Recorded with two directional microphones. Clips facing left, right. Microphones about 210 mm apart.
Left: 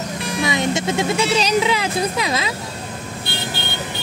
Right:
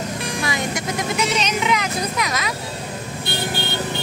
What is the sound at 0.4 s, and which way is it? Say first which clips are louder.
Speech: left 7 dB; 20° left (ahead or behind).